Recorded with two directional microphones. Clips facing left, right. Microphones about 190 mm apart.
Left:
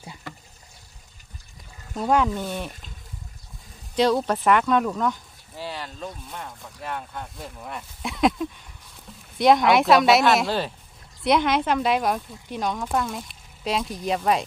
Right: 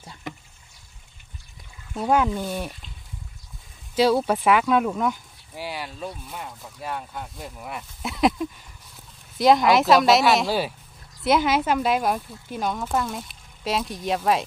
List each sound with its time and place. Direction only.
0.3 s a sound: 20° right (ahead or behind)
2.0 s speech: 5° right (ahead or behind)
3.9 s speech: 5° right (ahead or behind)